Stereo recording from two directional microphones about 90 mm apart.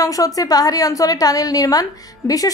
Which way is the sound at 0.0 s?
40° left (ahead or behind).